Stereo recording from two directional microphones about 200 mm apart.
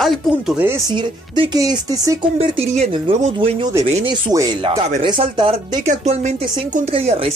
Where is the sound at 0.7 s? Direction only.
15° right (ahead or behind).